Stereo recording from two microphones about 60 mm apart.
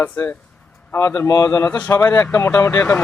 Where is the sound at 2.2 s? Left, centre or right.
Left.